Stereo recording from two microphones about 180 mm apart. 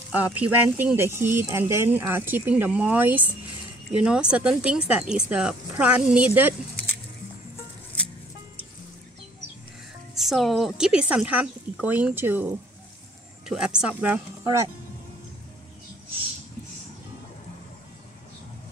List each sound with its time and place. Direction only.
0.1 s speech: 10° right (ahead or behind)
10.1 s a woman's voice: centre (ahead or behind)